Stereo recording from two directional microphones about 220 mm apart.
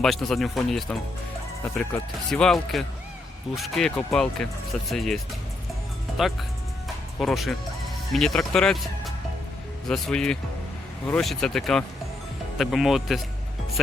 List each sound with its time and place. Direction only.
0.0 s speech: centre (ahead or behind)
6.8 s music: centre (ahead or behind)
8.1 s speech: centre (ahead or behind)